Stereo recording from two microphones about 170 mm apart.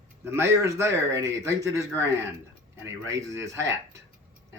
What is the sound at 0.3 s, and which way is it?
Speech, 15° right (ahead or behind).